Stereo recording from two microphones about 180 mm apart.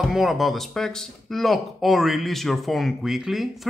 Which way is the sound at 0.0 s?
Centre (ahead or behind).